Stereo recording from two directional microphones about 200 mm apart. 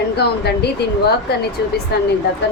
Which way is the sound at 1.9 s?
55° left (ahead or behind).